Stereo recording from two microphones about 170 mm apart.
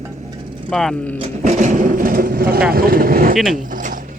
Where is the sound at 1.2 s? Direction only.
45° right (ahead or behind); by 2.6 s 60° right (ahead or behind).